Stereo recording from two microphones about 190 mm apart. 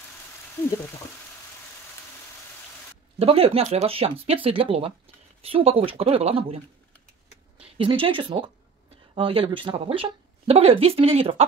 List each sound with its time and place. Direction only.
3.2 s speech: 30° right (ahead or behind)